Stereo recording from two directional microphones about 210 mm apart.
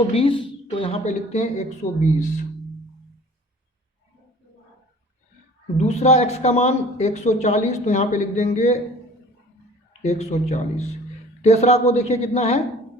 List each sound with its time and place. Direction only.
0.1 s a woman's voice: 25° left (ahead or behind)
5.7 s speech: 30° left (ahead or behind)
10.0 s speech: 30° left (ahead or behind)